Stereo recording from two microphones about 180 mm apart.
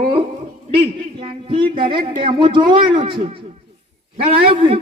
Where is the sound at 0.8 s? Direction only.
30° right (ahead or behind).